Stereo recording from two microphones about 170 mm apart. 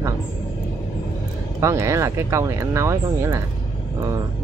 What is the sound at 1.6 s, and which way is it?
Speech, 15° right (ahead or behind).